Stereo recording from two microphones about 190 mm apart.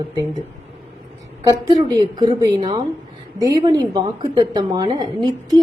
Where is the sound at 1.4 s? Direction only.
20° right (ahead or behind).